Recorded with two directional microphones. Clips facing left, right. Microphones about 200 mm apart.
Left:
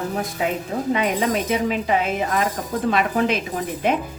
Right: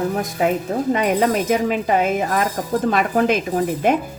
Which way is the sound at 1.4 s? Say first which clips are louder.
Right 3 dB; 45° right (ahead or behind).